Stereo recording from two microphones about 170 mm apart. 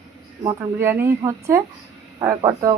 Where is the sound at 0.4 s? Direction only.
10° right (ahead or behind).